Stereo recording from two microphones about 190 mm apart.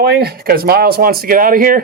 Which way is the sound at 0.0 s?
55° right (ahead or behind).